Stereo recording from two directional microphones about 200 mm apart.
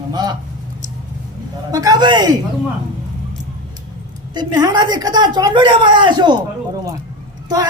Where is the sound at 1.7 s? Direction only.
20° right (ahead or behind).